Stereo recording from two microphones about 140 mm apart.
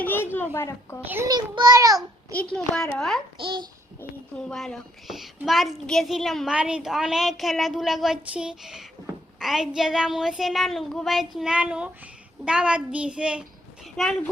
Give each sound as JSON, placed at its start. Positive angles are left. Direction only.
{"t": 0.0, "sound": "a sound", "side_deg": 15}
{"t": 1.0, "sound": "a child's voice", "side_deg": -15}
{"t": 1.3, "sound": "a child's voice", "side_deg": -30}
{"t": 2.3, "sound": "a woman's voice", "side_deg": 10}
{"t": 3.3, "sound": "a child's voice", "side_deg": -35}
{"t": 4.4, "sound": "a child's voice", "side_deg": 5}
{"t": 13.9, "sound": "a child's voice", "side_deg": 5}